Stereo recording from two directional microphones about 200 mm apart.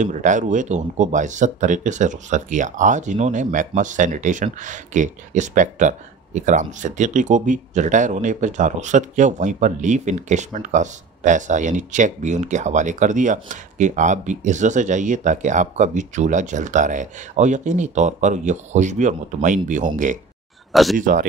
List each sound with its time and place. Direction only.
0.0 s speech: 40° right (ahead or behind)
20.7 s speech: centre (ahead or behind)
21.0 s speech: 45° right (ahead or behind)